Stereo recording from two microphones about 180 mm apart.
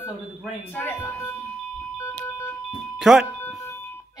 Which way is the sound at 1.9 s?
10° left (ahead or behind).